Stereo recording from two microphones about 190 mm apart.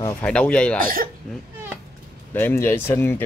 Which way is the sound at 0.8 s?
50° right (ahead or behind).